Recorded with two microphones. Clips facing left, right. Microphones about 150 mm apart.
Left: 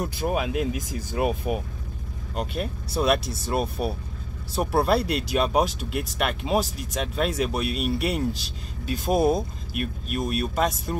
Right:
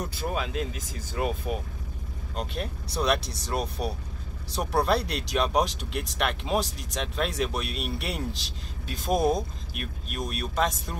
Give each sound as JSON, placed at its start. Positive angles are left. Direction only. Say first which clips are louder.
{"t": 0.0, "sound": "speech", "louder": "left 5 dB", "side_deg": 10}